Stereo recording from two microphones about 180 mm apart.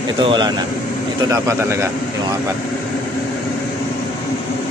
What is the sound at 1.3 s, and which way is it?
Speech, 15° right (ahead or behind).